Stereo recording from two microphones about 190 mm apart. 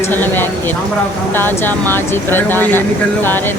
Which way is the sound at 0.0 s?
10° left (ahead or behind).